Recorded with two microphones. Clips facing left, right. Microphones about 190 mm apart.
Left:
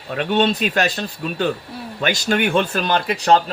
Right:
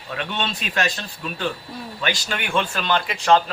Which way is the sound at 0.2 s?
40° left (ahead or behind).